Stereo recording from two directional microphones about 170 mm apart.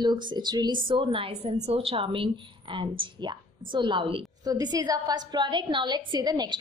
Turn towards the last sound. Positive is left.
turn(degrees=-25)  # may be behind; listen again after turning